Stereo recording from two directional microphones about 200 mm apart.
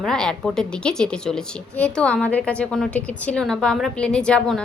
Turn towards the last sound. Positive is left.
turn(degrees=5)  # may be behind; listen again after turning